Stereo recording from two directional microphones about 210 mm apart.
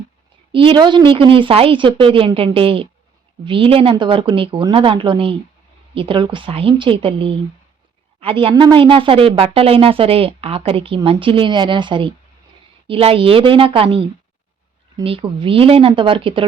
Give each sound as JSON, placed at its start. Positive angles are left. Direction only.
{"t": 0.5, "sound": "a woman's voice", "side_deg": -25}